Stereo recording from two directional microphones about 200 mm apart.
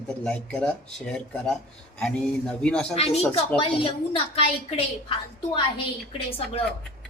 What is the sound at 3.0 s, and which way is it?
A woman's voice, 30° left (ahead or behind).